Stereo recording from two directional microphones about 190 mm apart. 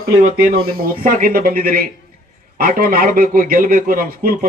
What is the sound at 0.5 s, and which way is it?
A man's voice, 50° right (ahead or behind).